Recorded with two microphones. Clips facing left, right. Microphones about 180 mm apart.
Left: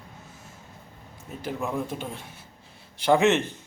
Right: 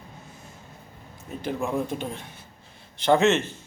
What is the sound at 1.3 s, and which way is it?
Speech, 5° left (ahead or behind).